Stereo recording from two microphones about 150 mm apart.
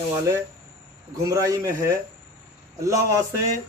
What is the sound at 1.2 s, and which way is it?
Speech, 20° right (ahead or behind).